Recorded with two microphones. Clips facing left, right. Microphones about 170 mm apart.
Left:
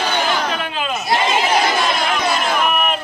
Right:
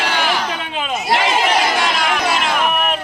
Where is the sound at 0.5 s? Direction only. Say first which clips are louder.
Left 1 dB; 20° right (ahead or behind).